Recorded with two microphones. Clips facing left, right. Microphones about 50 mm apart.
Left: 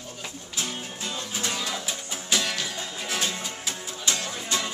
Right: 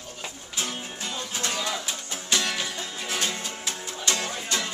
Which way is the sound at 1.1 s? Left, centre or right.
Centre.